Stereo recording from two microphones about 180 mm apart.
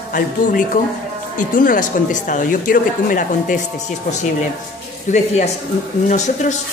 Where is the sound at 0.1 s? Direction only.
45° left (ahead or behind).